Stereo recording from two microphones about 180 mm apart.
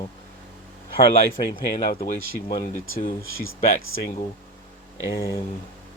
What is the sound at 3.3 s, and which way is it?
Speech, 90° left.